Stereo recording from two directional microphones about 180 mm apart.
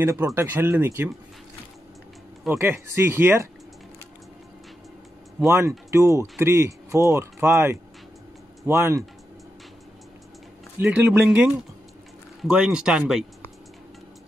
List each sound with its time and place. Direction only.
0.0 s speech: 15° right (ahead or behind)
2.5 s speech: 15° right (ahead or behind)
5.5 s speech: 15° right (ahead or behind)
10.8 s speech: 10° right (ahead or behind)